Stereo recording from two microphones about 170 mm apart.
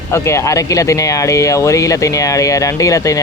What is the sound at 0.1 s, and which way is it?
Speech, 15° left (ahead or behind).